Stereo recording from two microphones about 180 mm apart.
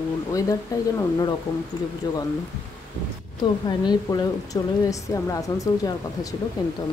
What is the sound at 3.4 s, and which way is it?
A woman's voice, 25° left (ahead or behind).